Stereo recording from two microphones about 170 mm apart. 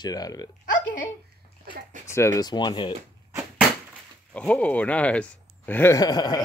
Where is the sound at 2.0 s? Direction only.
15° left (ahead or behind).